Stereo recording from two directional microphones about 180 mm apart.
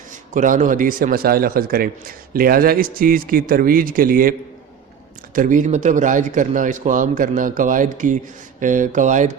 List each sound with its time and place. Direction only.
0.3 s a man's voice: 45° right (ahead or behind)